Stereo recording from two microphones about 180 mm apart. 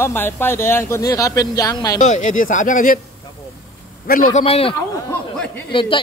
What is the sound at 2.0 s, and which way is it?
Speech, 45° left (ahead or behind).